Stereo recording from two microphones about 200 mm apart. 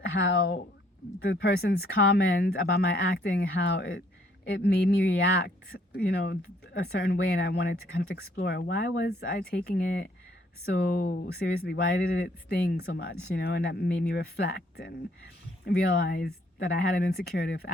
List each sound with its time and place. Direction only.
0.1 s speech: 65° left (ahead or behind)
1.3 s speech: 50° left (ahead or behind)